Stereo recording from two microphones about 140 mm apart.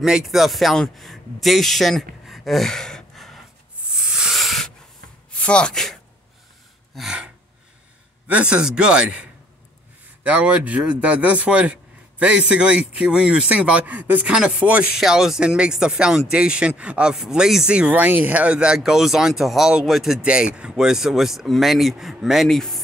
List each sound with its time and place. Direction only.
0.0 s speech: 5° right (ahead or behind)
2.2 s gasp: centre (ahead or behind)
3.9 s a sound: 5° right (ahead or behind)
5.4 s speech: 5° left (ahead or behind)
7.0 s gasp: 5° right (ahead or behind)
8.3 s a man's voice: 10° right (ahead or behind)